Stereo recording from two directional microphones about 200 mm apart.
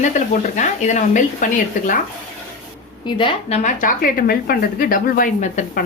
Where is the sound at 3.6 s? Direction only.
45° left (ahead or behind).